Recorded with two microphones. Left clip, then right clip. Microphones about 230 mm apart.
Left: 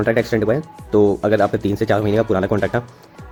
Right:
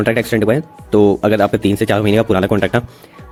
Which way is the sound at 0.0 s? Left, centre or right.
Right.